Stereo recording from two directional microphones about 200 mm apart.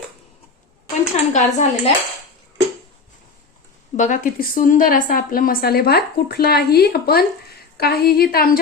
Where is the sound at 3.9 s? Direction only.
40° left (ahead or behind).